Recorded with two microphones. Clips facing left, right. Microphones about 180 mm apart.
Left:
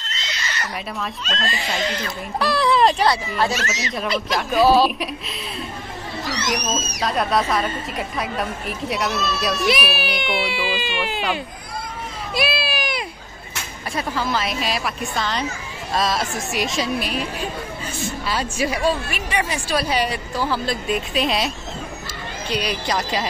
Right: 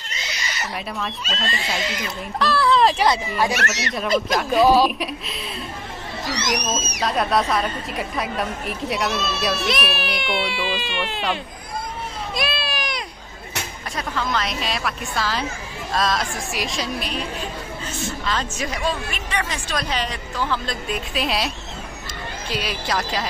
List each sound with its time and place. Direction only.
0.0 s speech: 10° right (ahead or behind)
2.3 s a woman's voice: 15° left (ahead or behind)
2.8 s speech: centre (ahead or behind)
3.5 s a child's voice: 65° right (ahead or behind)
4.3 s speech: centre (ahead or behind)
6.7 s speech: centre (ahead or behind)
12.4 s baby cry: 5° left (ahead or behind)
13.9 s a woman's voice: 5° left (ahead or behind)
22.5 s speech: centre (ahead or behind)